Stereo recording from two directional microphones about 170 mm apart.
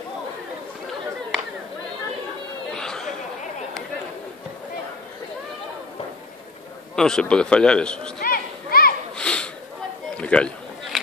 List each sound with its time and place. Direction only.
2.7 s chatter: 5° left (ahead or behind)
7.0 s a man's voice: 5° left (ahead or behind)
8.2 s children playing: 60° left (ahead or behind)
9.1 s a sound: 5° left (ahead or behind)